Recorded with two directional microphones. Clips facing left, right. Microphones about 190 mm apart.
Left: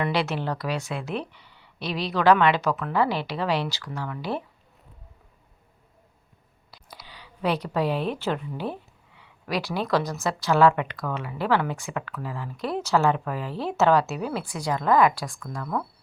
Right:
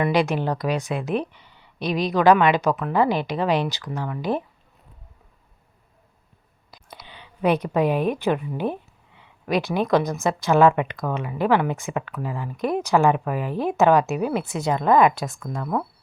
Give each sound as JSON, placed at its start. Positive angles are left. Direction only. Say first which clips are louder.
{"t": 0.0, "sound": "a woman's voice", "louder": "right 5 dB", "side_deg": -15}
{"t": 6.7, "sound": "a woman's voice", "louder": "right 3 dB", "side_deg": -20}